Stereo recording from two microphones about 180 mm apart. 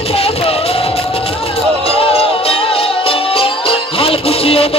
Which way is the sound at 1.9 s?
30° left (ahead or behind).